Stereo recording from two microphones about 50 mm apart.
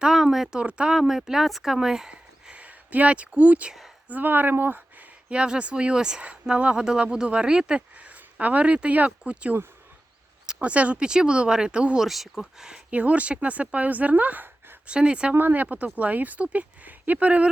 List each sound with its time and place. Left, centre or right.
0.0 s a sound: centre
0.6 s speech: right
0.9 s a woman's voice: centre
2.5 s speech: right
4.1 s speech: right
5.3 s speech: centre
10.6 s speech: right
11.9 s a woman's voice: centre
12.9 s speech: right
14.8 s speech: centre
15.4 s speech: right
15.6 s speech: right